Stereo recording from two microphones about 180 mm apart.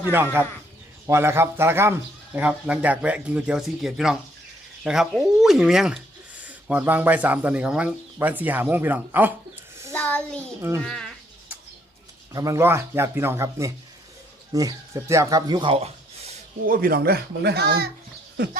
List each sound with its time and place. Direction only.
0.1 s speech: 10° right (ahead or behind)
9.9 s child singing: 10° left (ahead or behind)
10.8 s speech: 5° left (ahead or behind)
12.3 s speech: 20° right (ahead or behind); by 16.4 s 35° right (ahead or behind)
16.6 s speech: 55° right (ahead or behind)